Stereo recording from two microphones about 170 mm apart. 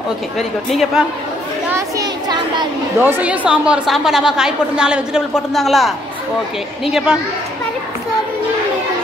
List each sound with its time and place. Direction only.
0.4 s a woman's voice: centre (ahead or behind)
1.7 s a child's voice: 20° right (ahead or behind)
3.0 s a woman's voice: 10° right (ahead or behind)